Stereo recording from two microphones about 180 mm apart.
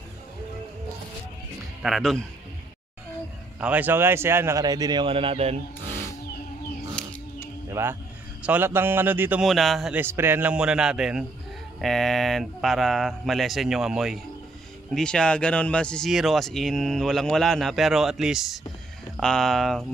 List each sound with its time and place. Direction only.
1.8 s speech: centre (ahead or behind)
3.5 s a man's voice: 10° right (ahead or behind); by 5.6 s 35° right (ahead or behind)
7.0 s music: 5° left (ahead or behind)
7.7 s a man's voice: 15° right (ahead or behind)
9.5 s speech: centre (ahead or behind)